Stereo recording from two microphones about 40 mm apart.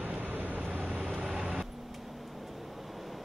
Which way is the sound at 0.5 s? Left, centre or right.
Right.